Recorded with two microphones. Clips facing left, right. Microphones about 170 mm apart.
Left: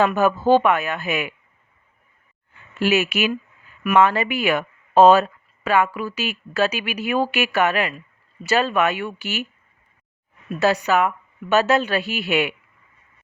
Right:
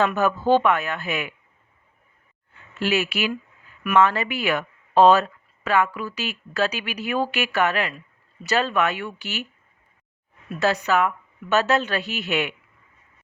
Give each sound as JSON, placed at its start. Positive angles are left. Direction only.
{"t": 0.0, "sound": "speech", "side_deg": 15}
{"t": 2.7, "sound": "speech", "side_deg": 15}
{"t": 10.6, "sound": "speech", "side_deg": 15}